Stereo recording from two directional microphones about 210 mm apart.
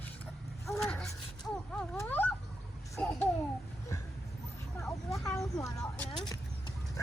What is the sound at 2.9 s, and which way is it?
Babbling, 10° left (ahead or behind).